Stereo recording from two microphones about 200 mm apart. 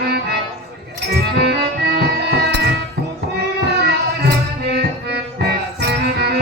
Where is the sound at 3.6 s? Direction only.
55° right (ahead or behind).